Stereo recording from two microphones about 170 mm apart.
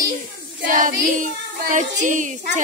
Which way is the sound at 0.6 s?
50° right (ahead or behind).